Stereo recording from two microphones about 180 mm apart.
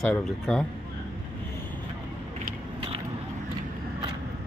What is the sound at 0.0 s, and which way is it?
Speech, centre (ahead or behind).